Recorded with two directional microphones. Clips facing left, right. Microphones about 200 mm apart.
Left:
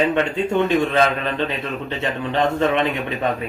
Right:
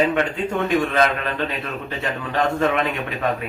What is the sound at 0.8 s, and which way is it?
Speech, 25° left (ahead or behind).